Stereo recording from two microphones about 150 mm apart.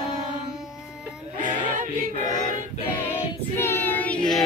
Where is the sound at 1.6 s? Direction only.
60° right (ahead or behind).